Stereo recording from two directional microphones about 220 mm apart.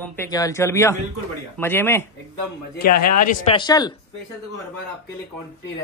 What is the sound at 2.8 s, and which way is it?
Speech, 40° left (ahead or behind).